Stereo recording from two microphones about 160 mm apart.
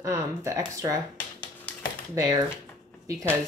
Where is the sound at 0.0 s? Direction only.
20° right (ahead or behind).